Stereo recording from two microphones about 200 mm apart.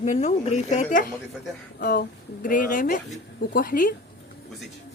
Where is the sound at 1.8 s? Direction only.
45° left (ahead or behind).